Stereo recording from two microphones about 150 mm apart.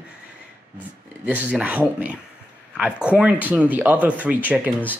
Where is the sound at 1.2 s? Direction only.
10° right (ahead or behind).